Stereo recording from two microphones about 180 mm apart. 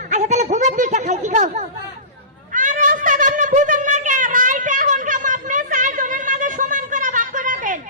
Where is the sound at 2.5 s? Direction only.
45° right (ahead or behind).